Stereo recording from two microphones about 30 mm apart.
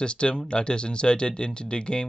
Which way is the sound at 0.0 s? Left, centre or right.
Left.